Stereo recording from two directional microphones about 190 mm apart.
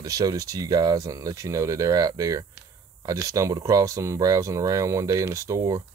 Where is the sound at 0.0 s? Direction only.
20° right (ahead or behind).